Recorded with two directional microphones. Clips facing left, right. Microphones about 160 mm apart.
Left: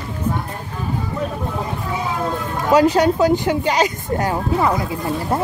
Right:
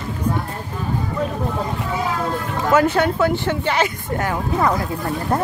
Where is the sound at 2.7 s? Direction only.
15° left (ahead or behind).